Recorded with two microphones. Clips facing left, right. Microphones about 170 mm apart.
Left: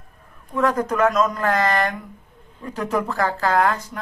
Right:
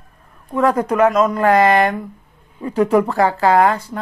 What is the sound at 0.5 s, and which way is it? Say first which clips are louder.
Speech: right 4 dB; 30° right (ahead or behind).